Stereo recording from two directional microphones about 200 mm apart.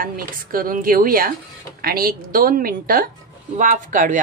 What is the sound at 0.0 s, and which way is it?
Speech, 45° right (ahead or behind).